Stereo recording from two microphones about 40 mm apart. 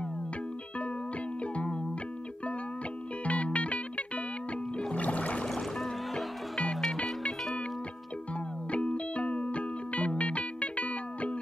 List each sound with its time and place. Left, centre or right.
1.4 s music: left
3.3 s music: left
5.5 s music: centre
6.1 s music: left
6.7 s music: centre
8.7 s music: left